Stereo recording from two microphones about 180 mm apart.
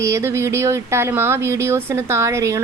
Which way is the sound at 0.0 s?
15° right (ahead or behind).